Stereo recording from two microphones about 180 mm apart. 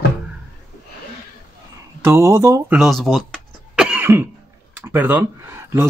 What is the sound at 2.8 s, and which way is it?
Throat clearing, centre (ahead or behind).